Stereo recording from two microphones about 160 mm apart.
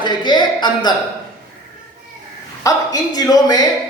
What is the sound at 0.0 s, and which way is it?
Speech, 30° left (ahead or behind).